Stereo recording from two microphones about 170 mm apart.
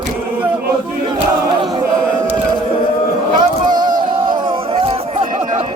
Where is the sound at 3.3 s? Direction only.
25° right (ahead or behind).